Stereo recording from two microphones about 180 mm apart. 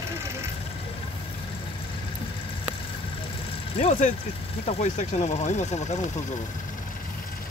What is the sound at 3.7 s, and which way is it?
Speech, 40° left (ahead or behind).